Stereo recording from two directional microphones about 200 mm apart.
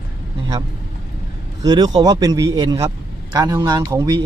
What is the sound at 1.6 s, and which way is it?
Speech, 20° right (ahead or behind).